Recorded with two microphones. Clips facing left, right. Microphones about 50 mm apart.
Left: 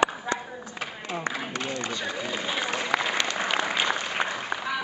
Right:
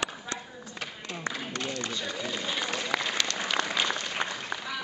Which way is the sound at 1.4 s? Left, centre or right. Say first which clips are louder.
Left 3 dB; centre.